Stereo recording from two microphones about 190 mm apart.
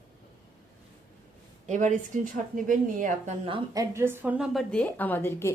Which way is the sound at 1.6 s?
40° right (ahead or behind).